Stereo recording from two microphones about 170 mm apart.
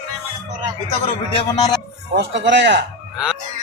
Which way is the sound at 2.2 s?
90° right.